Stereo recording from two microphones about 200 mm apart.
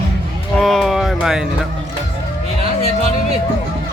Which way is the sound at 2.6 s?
35° right (ahead or behind).